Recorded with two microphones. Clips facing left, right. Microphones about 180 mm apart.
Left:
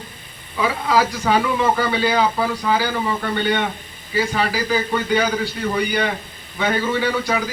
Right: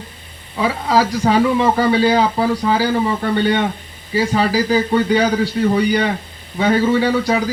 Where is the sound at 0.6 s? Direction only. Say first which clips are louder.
Right 2 dB; 35° right (ahead or behind).